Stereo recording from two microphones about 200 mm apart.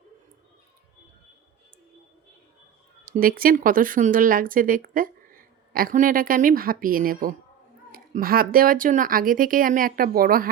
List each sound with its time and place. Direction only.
3.1 s speech: 45° right (ahead or behind)